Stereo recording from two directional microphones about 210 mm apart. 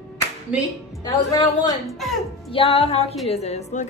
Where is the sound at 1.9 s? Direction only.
Centre (ahead or behind).